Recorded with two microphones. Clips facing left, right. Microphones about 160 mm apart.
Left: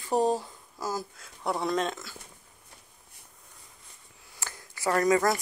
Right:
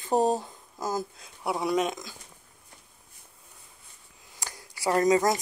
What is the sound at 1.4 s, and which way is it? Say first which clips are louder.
Speech: right 2 dB; 10° right (ahead or behind).